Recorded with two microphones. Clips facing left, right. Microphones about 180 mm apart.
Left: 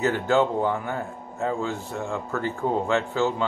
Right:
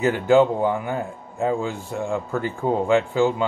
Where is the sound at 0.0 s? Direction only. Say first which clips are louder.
Right 5 dB; 15° right (ahead or behind).